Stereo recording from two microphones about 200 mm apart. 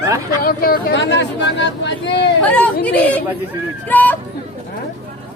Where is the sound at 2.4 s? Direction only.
5° left (ahead or behind).